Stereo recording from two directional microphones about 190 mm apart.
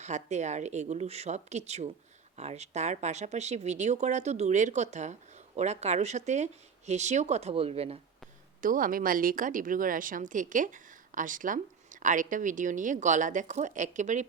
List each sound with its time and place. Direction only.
0.0 s speech: 35° right (ahead or behind)
8.6 s a woman's voice: 45° right (ahead or behind)